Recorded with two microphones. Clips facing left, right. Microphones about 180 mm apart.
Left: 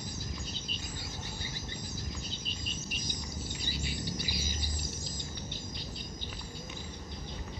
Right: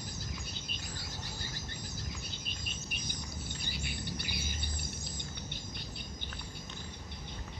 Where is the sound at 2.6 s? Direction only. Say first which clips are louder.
Left 3 dB; 60° right (ahead or behind).